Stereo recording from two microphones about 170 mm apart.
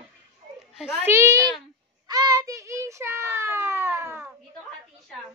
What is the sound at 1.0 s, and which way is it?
Speech, 15° right (ahead or behind).